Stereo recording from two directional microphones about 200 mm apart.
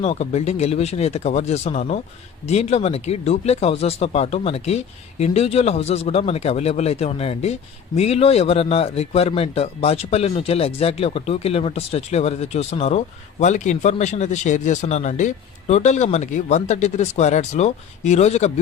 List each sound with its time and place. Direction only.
0.0 s speech: 35° left (ahead or behind)